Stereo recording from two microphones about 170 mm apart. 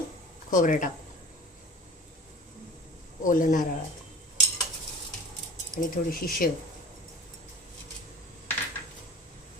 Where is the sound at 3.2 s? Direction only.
50° left (ahead or behind).